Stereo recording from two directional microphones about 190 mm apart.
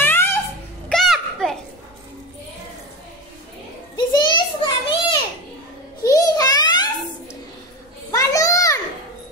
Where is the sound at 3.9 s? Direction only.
25° left (ahead or behind).